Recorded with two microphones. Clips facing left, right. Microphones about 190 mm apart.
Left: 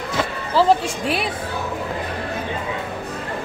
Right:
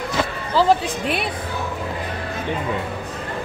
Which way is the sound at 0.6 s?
Centre (ahead or behind).